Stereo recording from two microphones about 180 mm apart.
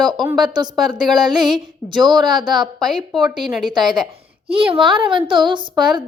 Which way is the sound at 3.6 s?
25° right (ahead or behind).